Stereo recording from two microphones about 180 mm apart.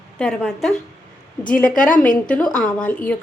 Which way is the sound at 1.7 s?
50° left (ahead or behind).